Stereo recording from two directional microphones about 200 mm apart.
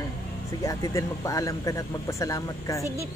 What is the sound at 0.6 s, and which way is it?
Speech, 15° left (ahead or behind).